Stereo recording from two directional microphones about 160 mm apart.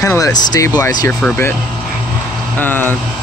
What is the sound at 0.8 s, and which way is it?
Speech, 10° left (ahead or behind).